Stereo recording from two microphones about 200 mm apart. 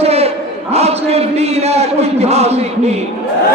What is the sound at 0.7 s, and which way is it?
A man's voice, 30° right (ahead or behind).